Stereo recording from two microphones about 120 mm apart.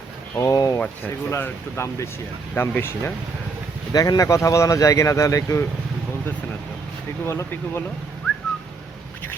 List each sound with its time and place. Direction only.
0.3 s speech: 30° left (ahead or behind)
0.8 s speech: 15° left (ahead or behind)
3.9 s speech: 30° left (ahead or behind)
7.3 s speech: 20° left (ahead or behind)